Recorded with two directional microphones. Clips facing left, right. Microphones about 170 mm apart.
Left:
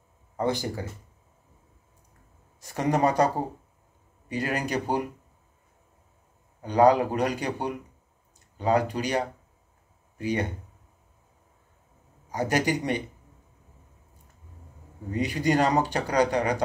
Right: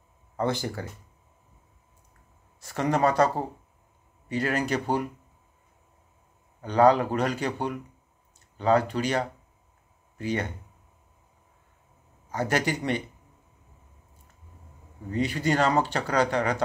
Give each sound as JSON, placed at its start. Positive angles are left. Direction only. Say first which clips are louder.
{"t": 0.4, "sound": "speech", "louder": "left 1 dB", "side_deg": 15}
{"t": 2.6, "sound": "speech", "louder": "even", "side_deg": 15}
{"t": 4.3, "sound": "speech", "louder": "right 2 dB", "side_deg": 15}
{"t": 6.6, "sound": "speech", "louder": "even", "side_deg": 15}
{"t": 12.3, "sound": "speech", "louder": "left 1 dB", "side_deg": 15}
{"t": 15.0, "sound": "speech", "louder": "left 1 dB", "side_deg": 15}